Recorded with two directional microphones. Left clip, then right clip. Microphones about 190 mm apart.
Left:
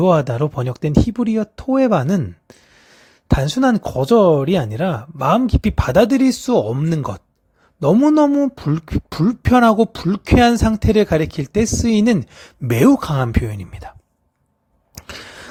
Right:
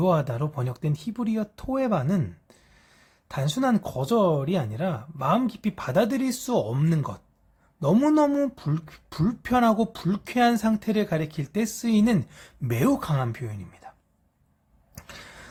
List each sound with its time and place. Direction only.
0.0 s speech: 35° left (ahead or behind)
3.2 s speech: 35° left (ahead or behind)
14.9 s a sound: 40° left (ahead or behind)